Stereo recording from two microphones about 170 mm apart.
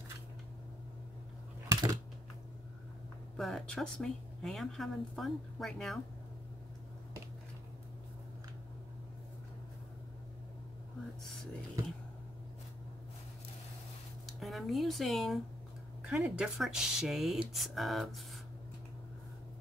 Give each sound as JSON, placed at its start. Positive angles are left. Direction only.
{"t": 1.7, "sound": "computer keyboard", "side_deg": -20}
{"t": 3.3, "sound": "speech", "side_deg": 0}
{"t": 14.2, "sound": "a sound", "side_deg": 0}
{"t": 16.1, "sound": "speech", "side_deg": -5}